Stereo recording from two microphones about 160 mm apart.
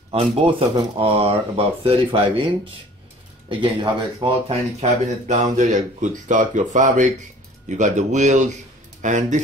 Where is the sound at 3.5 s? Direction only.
30° right (ahead or behind).